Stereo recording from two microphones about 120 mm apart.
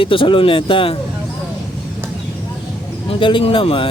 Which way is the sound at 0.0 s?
45° left (ahead or behind).